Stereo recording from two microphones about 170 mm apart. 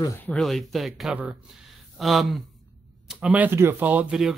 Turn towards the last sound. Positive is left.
turn(degrees=-5)  # may be behind; listen again after turning